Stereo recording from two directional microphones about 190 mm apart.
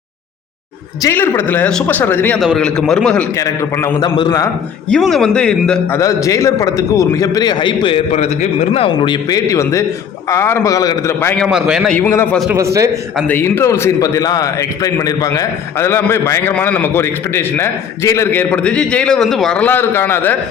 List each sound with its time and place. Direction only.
1.0 s a man's voice: 15° left (ahead or behind)
3.3 s a man's voice: 15° left (ahead or behind)
4.9 s speech: centre (ahead or behind)
6.0 s a man's voice: 15° left (ahead or behind)
11.4 s speech: 5° right (ahead or behind)
11.9 s a man's voice: 10° left (ahead or behind)